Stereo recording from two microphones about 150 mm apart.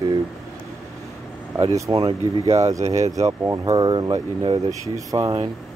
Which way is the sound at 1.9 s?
35° right (ahead or behind).